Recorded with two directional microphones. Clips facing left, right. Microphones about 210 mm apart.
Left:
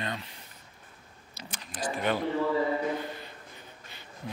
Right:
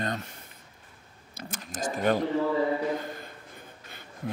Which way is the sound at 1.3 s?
45° right (ahead or behind).